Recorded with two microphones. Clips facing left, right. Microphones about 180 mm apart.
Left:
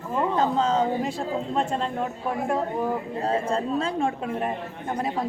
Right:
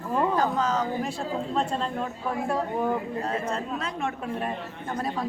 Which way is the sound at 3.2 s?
30° left (ahead or behind).